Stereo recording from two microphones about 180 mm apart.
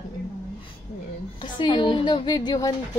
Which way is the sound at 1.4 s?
25° left (ahead or behind).